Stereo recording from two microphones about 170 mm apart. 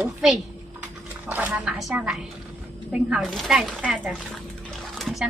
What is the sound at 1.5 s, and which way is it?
A woman's voice, centre (ahead or behind).